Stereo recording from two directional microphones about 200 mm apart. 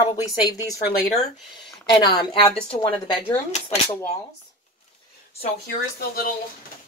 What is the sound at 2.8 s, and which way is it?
Speech, 10° left (ahead or behind).